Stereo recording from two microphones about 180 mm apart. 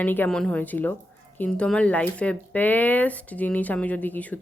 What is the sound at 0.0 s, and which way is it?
Speech, 10° left (ahead or behind).